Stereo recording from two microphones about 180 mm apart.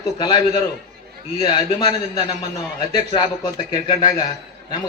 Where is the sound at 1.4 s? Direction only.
25° left (ahead or behind).